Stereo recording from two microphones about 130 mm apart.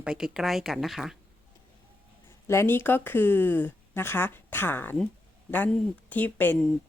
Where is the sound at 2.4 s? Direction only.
20° left (ahead or behind).